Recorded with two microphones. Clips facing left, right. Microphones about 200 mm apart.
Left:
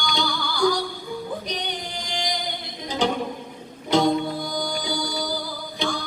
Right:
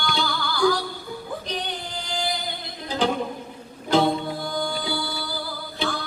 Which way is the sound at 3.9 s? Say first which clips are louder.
Left 1 dB; 5° right (ahead or behind).